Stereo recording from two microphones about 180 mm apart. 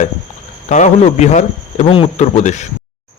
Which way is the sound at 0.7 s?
40° left (ahead or behind).